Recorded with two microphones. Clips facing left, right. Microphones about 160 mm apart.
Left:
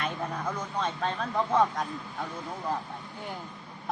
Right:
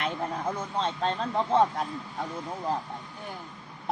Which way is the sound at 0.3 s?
30° right (ahead or behind).